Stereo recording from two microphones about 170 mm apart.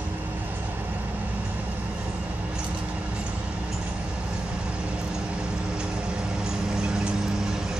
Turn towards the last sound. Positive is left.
turn(degrees=-5)  # may be behind; listen again after turning